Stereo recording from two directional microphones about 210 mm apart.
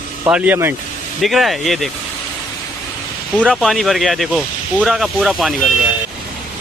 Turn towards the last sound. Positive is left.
turn(degrees=0)  # may be behind; listen again after turning